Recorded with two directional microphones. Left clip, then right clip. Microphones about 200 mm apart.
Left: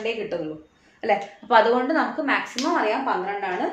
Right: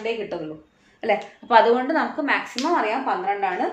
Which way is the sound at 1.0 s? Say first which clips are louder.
Even; 25° right (ahead or behind).